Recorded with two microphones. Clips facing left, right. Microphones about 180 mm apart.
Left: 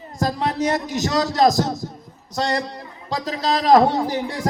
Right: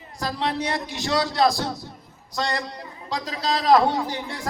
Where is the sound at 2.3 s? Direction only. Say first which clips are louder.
Left 4 dB; 40° left (ahead or behind).